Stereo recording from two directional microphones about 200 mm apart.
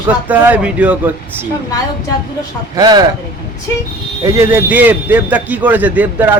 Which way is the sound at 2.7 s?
20° right (ahead or behind).